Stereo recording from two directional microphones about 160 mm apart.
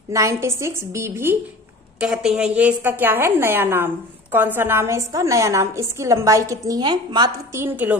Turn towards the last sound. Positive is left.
turn(degrees=-10)  # may be behind; listen again after turning